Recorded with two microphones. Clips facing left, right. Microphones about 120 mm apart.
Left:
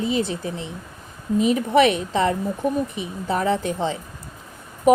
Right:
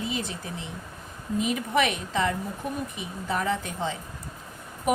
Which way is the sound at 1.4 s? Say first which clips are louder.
Left 9 dB; 35° left (ahead or behind).